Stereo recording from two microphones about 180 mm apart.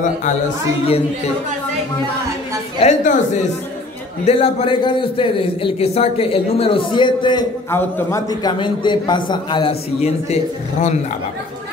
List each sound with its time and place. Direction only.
0.8 s a man's voice: 35° left (ahead or behind)
2.8 s a man's voice: 40° left (ahead or behind)